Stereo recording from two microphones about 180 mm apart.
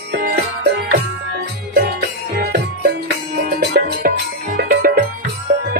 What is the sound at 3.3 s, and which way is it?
Music, 60° right (ahead or behind).